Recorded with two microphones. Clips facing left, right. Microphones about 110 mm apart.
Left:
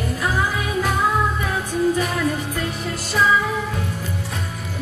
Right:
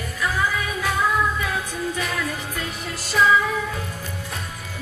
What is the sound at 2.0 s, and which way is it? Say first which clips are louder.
Music: left 5 dB; 10° left (ahead or behind).